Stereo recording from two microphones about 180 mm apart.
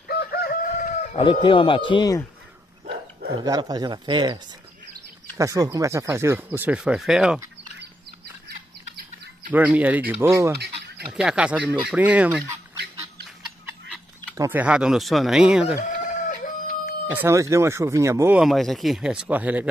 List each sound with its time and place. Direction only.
0.1 s chicken: 60° left (ahead or behind)
1.1 s speech: 25° left (ahead or behind)
2.9 s dog: 60° right (ahead or behind)
3.4 s speech: 20° right (ahead or behind)
5.4 s speech: 20° right (ahead or behind); by 7.3 s 5° right (ahead or behind)
8.5 s chicken: 60° right (ahead or behind)
9.5 s speech: 10° right (ahead or behind)
14.3 s speech: 15° right (ahead or behind)
17.1 s speech: 15° right (ahead or behind)
18.4 s speech: centre (ahead or behind)